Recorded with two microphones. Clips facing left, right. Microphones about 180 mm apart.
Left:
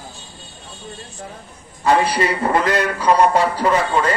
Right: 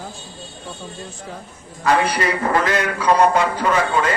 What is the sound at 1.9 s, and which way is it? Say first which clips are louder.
A man's voice: left 2 dB; 30° left (ahead or behind).